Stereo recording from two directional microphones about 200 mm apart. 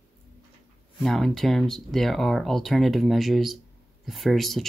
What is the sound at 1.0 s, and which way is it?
Speech, centre (ahead or behind).